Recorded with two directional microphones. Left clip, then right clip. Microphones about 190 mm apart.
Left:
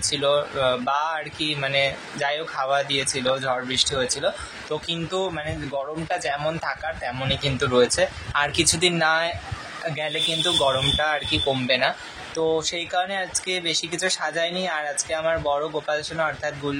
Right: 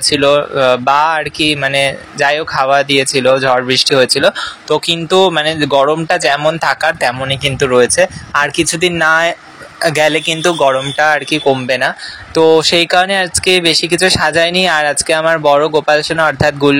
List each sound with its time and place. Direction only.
0.1 s speech: 35° right (ahead or behind)
7.6 s speech: 30° right (ahead or behind)